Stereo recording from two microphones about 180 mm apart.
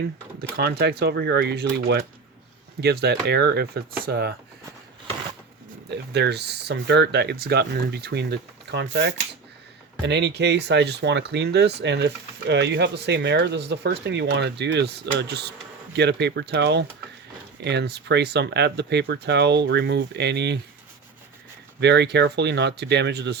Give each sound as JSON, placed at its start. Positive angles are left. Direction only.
{"t": 0.5, "sound": "speech", "side_deg": -65}
{"t": 5.9, "sound": "speech", "side_deg": -70}
{"t": 21.8, "sound": "speech", "side_deg": -70}